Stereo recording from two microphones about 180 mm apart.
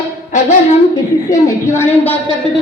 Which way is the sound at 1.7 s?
15° left (ahead or behind).